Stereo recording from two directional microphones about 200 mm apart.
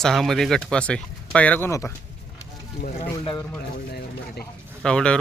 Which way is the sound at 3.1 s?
20° left (ahead or behind).